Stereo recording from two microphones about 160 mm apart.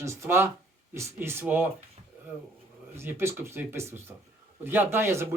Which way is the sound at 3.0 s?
15° right (ahead or behind).